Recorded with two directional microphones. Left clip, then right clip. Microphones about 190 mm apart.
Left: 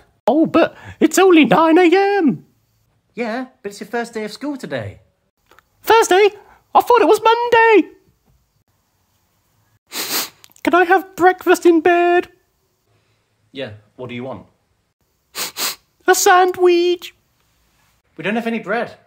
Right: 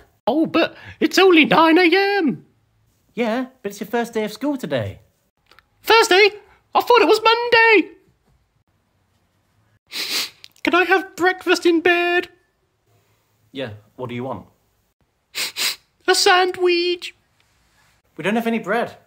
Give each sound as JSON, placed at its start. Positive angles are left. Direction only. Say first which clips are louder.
{"t": 0.3, "sound": "speech", "louder": "left 4 dB", "side_deg": 25}
{"t": 3.2, "sound": "speech", "louder": "right 1 dB", "side_deg": 0}
{"t": 5.5, "sound": "speech", "louder": "left 2 dB", "side_deg": 30}
{"t": 9.8, "sound": "speech", "louder": "even", "side_deg": 40}
{"t": 13.5, "sound": "speech", "louder": "left 1 dB", "side_deg": -5}
{"t": 15.3, "sound": "sniff", "louder": "right 1 dB", "side_deg": 35}
{"t": 18.1, "sound": "speech", "louder": "even", "side_deg": 0}